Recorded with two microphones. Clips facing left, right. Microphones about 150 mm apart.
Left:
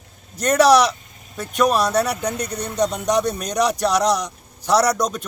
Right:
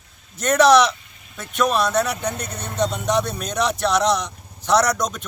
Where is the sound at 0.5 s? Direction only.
10° left (ahead or behind).